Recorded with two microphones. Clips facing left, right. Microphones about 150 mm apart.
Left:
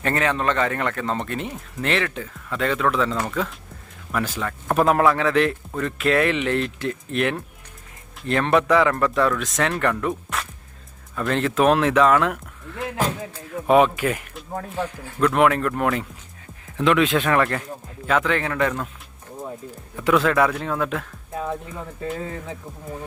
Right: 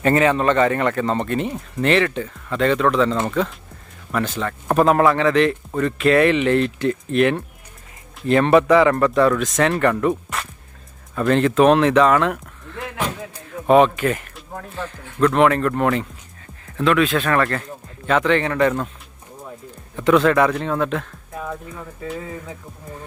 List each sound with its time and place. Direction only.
0.0 s a man's voice: 5° right (ahead or behind)
13.7 s a man's voice: 5° left (ahead or behind)
16.7 s a man's voice: 20° left (ahead or behind); by 18.9 s centre (ahead or behind)
20.0 s a man's voice: 5° left (ahead or behind)
21.3 s speech: 20° left (ahead or behind)